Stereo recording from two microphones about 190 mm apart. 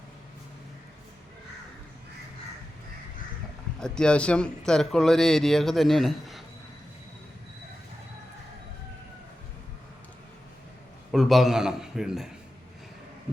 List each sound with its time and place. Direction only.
3.8 s speech: 5° left (ahead or behind)
11.1 s a man's voice: centre (ahead or behind)